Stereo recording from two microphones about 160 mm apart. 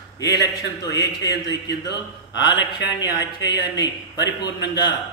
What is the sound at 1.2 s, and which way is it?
A man's voice, 90° left.